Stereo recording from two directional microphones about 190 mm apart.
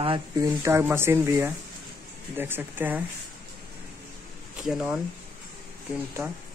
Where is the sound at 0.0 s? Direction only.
30° right (ahead or behind).